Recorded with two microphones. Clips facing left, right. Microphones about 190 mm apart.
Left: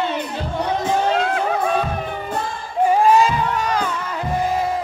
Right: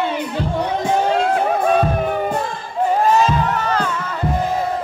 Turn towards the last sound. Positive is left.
turn(degrees=10)  # may be behind; listen again after turning